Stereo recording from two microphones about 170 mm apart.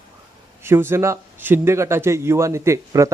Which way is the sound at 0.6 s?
15° right (ahead or behind).